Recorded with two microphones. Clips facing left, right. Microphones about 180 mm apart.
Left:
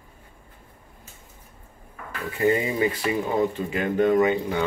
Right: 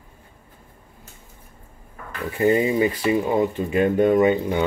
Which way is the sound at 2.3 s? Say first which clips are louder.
Right 4 dB; 25° right (ahead or behind).